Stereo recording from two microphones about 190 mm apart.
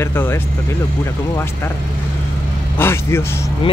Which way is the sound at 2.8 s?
10° left (ahead or behind).